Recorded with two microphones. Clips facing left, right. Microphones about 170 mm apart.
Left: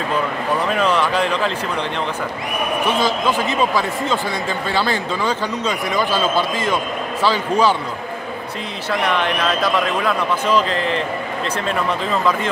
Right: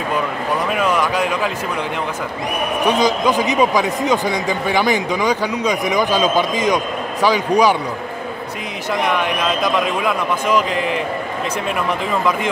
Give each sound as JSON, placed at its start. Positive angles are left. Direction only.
{"t": 0.7, "sound": "a sound", "side_deg": -10}
{"t": 2.9, "sound": "speech", "side_deg": -15}
{"t": 9.0, "sound": "speech", "side_deg": -15}